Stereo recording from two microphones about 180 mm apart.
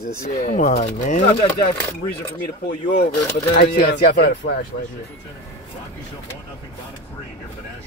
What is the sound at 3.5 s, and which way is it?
Speech, 60° left (ahead or behind).